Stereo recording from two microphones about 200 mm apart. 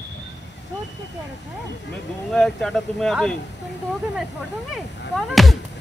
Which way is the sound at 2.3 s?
Centre (ahead or behind).